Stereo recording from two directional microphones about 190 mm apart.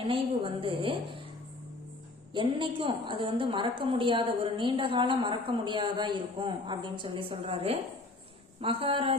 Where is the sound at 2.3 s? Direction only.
25° right (ahead or behind).